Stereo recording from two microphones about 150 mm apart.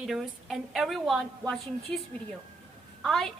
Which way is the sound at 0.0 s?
Centre (ahead or behind).